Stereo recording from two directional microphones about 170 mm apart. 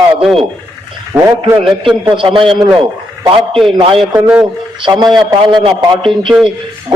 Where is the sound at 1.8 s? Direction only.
30° right (ahead or behind).